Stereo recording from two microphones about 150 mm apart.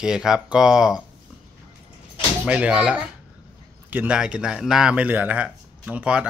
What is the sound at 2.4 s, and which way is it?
Speech, 5° right (ahead or behind).